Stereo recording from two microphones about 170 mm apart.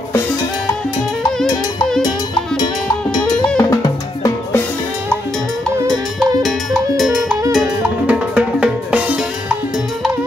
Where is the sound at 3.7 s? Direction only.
20° left (ahead or behind).